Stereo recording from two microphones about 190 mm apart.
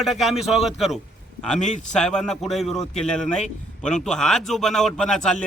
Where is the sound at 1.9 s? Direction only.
5° left (ahead or behind).